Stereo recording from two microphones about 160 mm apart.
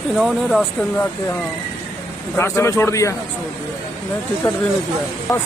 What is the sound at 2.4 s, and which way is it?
Speech, 15° left (ahead or behind).